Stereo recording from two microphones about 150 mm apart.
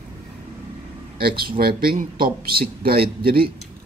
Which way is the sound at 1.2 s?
90° right.